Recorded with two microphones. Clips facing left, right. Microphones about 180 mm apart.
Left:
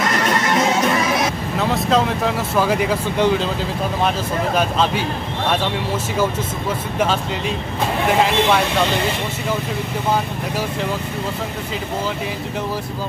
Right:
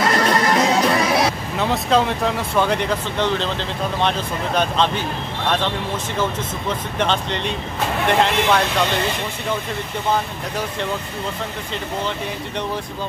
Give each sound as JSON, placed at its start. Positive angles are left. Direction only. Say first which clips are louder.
{"t": 0.0, "sound": "music", "louder": "right 2 dB", "side_deg": -35}
{"t": 1.6, "sound": "speech", "louder": "even", "side_deg": 0}
{"t": 4.6, "sound": "speech", "louder": "right 1 dB", "side_deg": 5}
{"t": 7.0, "sound": "speech", "louder": "left 1 dB", "side_deg": 5}